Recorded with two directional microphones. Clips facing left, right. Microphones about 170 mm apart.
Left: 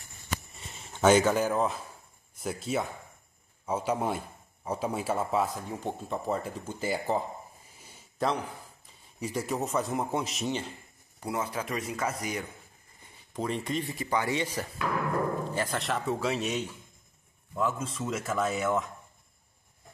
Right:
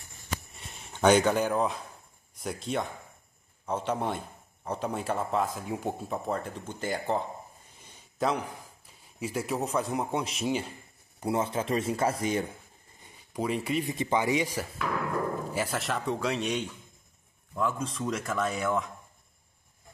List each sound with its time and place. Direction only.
0.6 s a man's voice: 5° left (ahead or behind)
7.8 s a sound: 5° left (ahead or behind)
8.3 s speech: 15° right (ahead or behind)
9.2 s speech: centre (ahead or behind)
11.1 s speech: 25° right (ahead or behind)
13.3 s speech: 5° right (ahead or behind)
13.9 s speech: 20° right (ahead or behind); by 18.9 s centre (ahead or behind)